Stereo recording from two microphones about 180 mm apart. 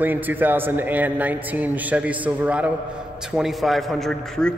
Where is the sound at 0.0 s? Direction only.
10° right (ahead or behind).